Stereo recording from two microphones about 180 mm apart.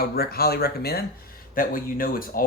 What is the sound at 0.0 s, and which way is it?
Speech, 55° left (ahead or behind).